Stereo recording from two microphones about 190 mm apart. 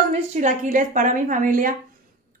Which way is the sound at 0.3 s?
40° right (ahead or behind).